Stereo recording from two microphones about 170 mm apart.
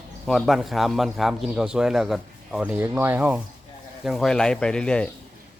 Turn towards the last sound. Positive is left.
turn(degrees=5)  # may be behind; listen again after turning